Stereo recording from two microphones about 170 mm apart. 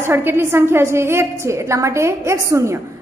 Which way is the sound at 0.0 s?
15° right (ahead or behind).